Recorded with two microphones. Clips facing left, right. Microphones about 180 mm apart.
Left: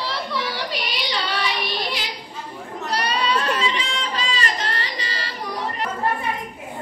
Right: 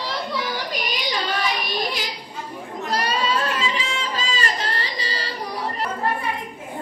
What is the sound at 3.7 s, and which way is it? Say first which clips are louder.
Music: even; 45° right (ahead or behind).